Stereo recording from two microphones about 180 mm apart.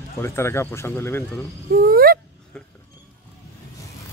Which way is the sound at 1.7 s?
55° right (ahead or behind).